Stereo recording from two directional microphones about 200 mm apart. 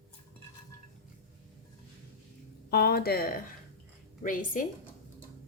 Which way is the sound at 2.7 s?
50° left (ahead or behind).